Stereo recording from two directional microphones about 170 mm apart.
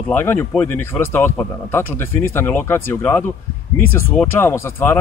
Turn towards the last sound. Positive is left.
turn(degrees=15)  # may be behind; listen again after turning